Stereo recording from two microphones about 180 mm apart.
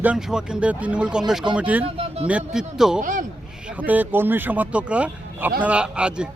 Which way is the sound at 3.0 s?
45° right (ahead or behind).